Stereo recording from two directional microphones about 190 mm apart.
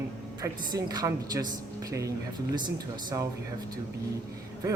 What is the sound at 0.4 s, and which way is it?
A man's voice, 20° right (ahead or behind).